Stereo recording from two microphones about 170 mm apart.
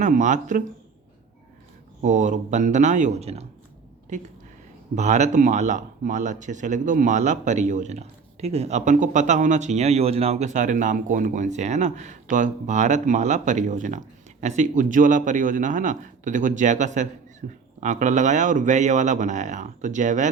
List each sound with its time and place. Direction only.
0.0 s speech: 45° right (ahead or behind)
2.0 s speech: 45° right (ahead or behind)